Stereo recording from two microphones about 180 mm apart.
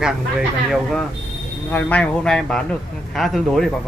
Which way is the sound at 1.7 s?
10° left (ahead or behind).